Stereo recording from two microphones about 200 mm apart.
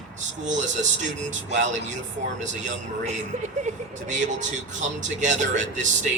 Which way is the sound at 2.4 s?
35° right (ahead or behind).